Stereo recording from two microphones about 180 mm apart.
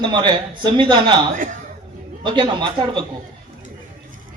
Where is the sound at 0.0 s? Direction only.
25° right (ahead or behind).